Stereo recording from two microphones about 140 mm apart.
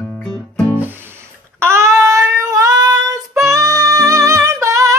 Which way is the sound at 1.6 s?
20° right (ahead or behind).